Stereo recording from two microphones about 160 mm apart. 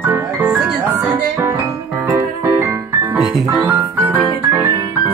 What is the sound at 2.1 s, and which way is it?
Music, 20° right (ahead or behind).